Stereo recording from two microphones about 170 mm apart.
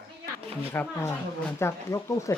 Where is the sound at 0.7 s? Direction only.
15° left (ahead or behind).